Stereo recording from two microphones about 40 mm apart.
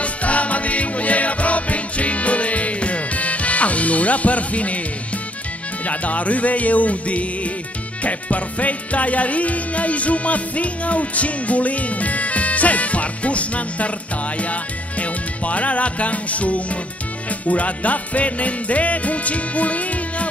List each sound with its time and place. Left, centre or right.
0.0 s music: left
5.9 s music: left